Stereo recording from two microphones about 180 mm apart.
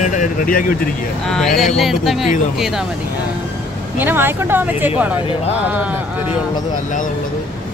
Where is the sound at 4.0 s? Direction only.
10° right (ahead or behind).